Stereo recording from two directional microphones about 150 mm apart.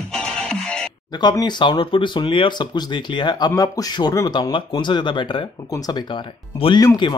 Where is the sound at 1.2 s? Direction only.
25° left (ahead or behind).